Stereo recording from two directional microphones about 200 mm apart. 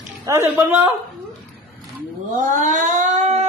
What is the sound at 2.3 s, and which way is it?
Cat, 40° right (ahead or behind).